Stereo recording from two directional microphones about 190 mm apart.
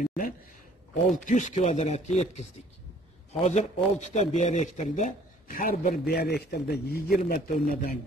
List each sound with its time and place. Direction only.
0.0 s speech: 45° left (ahead or behind)
3.4 s a man's voice: 35° left (ahead or behind)